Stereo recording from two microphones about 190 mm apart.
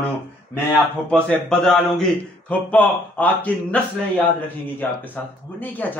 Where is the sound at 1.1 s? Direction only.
5° left (ahead or behind).